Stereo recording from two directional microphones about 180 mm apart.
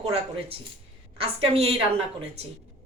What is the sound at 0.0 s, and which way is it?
A woman's voice, 35° right (ahead or behind).